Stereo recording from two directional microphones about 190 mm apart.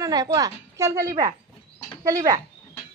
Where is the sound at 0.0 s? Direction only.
20° right (ahead or behind).